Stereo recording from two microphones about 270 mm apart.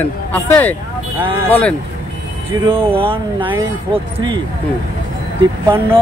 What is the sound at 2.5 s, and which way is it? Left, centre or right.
Speech, centre.